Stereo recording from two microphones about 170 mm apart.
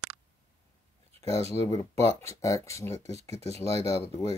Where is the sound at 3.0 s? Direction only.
40° right (ahead or behind).